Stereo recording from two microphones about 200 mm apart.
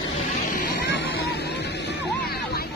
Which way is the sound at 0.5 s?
50° left (ahead or behind).